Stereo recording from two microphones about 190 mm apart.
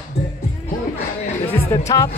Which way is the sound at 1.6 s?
15° left (ahead or behind).